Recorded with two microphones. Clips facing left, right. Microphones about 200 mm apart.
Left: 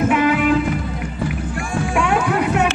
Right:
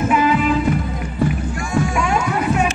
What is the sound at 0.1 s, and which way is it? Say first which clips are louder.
Music: even; 70° left (ahead or behind).